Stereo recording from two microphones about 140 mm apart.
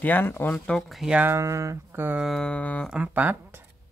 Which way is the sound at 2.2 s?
5° left (ahead or behind).